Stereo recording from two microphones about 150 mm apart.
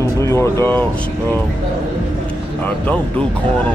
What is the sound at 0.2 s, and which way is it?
Speech, 20° left (ahead or behind).